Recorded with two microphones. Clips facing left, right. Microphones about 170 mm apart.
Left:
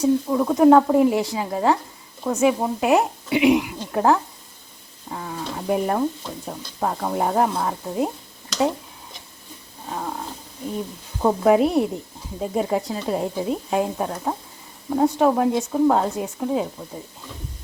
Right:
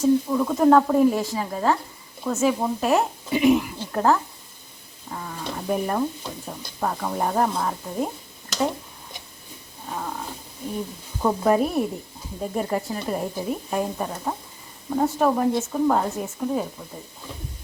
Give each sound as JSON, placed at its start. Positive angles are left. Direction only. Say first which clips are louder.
{"t": 0.0, "sound": "speech", "louder": "even", "side_deg": 15}
{"t": 11.4, "sound": "speech", "louder": "left 4 dB", "side_deg": 15}